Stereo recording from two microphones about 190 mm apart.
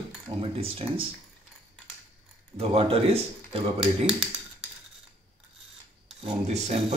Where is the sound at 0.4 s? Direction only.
30° right (ahead or behind).